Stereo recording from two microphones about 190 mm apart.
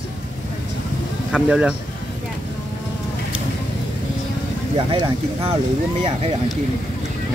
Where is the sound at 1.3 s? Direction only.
5° right (ahead or behind).